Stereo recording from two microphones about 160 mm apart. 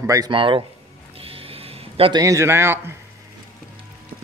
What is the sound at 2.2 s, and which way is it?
Speech, 20° right (ahead or behind).